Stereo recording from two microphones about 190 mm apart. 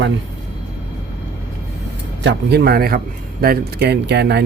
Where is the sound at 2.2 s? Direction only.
65° right (ahead or behind).